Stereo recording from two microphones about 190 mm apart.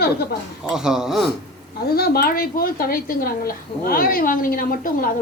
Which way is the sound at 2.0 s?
55° left (ahead or behind).